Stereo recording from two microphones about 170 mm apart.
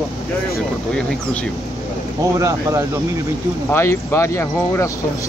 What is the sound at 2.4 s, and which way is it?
Speech, 20° right (ahead or behind).